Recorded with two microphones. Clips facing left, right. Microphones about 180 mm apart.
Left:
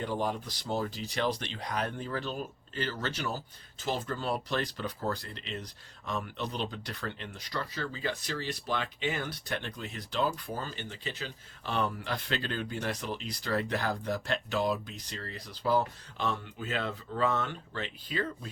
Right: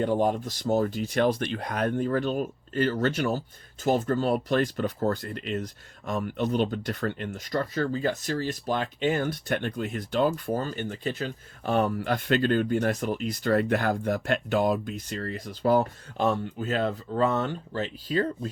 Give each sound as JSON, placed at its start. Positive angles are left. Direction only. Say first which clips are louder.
{"t": 0.0, "sound": "speech", "louder": "right 8 dB", "side_deg": -50}